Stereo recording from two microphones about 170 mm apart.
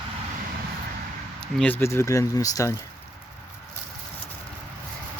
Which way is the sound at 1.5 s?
10° left (ahead or behind).